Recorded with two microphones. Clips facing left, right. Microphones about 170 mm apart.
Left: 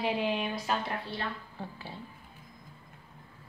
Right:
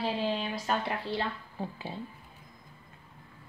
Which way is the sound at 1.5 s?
20° right (ahead or behind).